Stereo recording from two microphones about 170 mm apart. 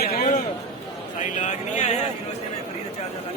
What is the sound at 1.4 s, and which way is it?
Speech, 45° left (ahead or behind).